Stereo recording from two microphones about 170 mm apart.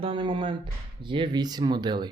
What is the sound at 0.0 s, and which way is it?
Speech, 30° right (ahead or behind).